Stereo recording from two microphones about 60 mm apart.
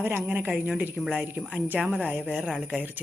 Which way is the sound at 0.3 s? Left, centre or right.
Right.